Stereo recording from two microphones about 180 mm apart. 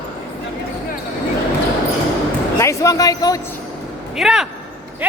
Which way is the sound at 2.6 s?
15° left (ahead or behind).